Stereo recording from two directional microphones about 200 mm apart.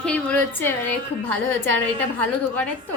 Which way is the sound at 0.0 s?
5° left (ahead or behind).